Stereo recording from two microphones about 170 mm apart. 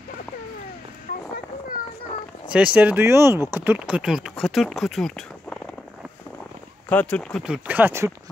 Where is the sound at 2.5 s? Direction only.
5° right (ahead or behind).